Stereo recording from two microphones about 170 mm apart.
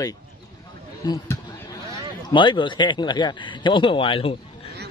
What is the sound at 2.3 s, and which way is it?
Speech, 30° left (ahead or behind).